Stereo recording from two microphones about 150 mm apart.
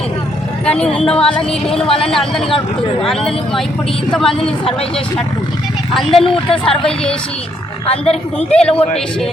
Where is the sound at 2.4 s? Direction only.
35° left (ahead or behind).